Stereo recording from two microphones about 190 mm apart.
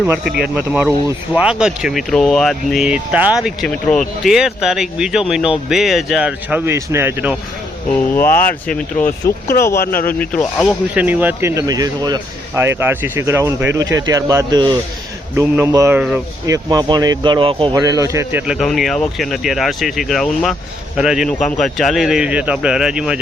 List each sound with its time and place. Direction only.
0.0 s speech: 5° right (ahead or behind)
8.1 s speech: 10° left (ahead or behind)
9.0 s speech: 45° left (ahead or behind)
10.2 s speech: 10° left (ahead or behind)
10.9 s speech: 10° right (ahead or behind)
16.5 s speech: 20° right (ahead or behind); by 23.2 s 5° right (ahead or behind)